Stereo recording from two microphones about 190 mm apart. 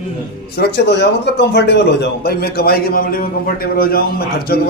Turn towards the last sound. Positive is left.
turn(degrees=55)  # may be behind; listen again after turning